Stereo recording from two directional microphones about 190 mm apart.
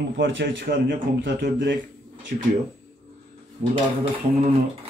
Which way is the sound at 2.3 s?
50° right (ahead or behind).